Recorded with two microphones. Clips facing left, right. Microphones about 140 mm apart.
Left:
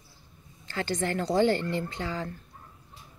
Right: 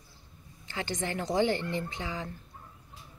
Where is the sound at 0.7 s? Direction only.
20° right (ahead or behind).